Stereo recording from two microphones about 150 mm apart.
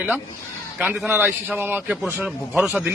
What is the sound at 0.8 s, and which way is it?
A man's voice, 10° right (ahead or behind).